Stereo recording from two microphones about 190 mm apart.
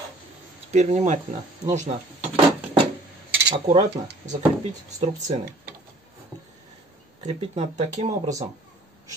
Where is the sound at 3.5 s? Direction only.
30° right (ahead or behind).